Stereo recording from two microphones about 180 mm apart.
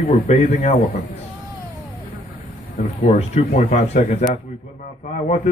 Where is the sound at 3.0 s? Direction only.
35° left (ahead or behind).